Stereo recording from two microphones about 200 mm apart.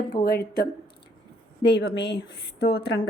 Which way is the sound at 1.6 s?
60° left (ahead or behind).